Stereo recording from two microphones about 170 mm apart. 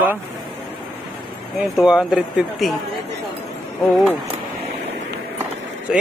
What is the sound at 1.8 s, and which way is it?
Speech, 5° right (ahead or behind).